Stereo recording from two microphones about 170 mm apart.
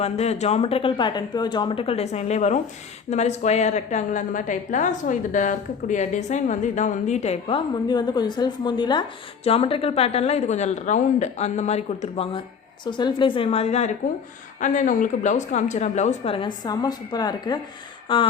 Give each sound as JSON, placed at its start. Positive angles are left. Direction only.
{"t": 0.0, "sound": "a woman's voice", "side_deg": 40}